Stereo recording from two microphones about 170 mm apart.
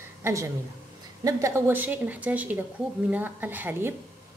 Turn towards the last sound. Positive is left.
turn(degrees=-10)  # may be behind; listen again after turning